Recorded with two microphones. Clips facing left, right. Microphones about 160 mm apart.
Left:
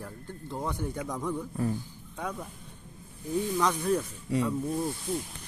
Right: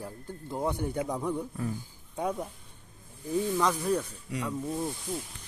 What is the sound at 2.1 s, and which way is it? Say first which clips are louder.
Speech: right 5 dB; 25° right (ahead or behind).